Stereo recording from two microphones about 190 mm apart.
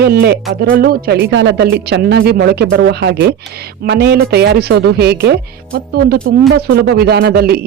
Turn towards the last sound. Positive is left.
turn(degrees=-55)  # may be behind; listen again after turning